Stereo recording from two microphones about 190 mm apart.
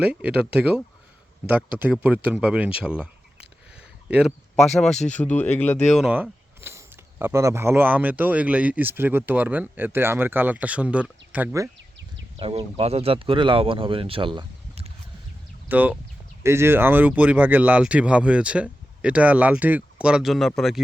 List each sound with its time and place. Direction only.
0.0 s speech: 5° right (ahead or behind)
5.9 s speech: 5° right (ahead or behind)
12.4 s speech: 30° right (ahead or behind)
15.7 s speech: 10° right (ahead or behind)